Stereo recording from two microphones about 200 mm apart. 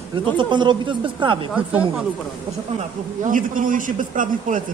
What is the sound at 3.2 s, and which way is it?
Speech, 40° right (ahead or behind).